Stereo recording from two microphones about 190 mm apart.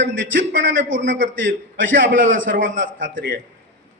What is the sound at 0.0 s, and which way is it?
A man's voice, 75° right (ahead or behind).